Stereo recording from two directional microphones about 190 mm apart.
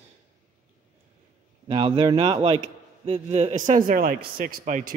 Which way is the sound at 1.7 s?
30° right (ahead or behind).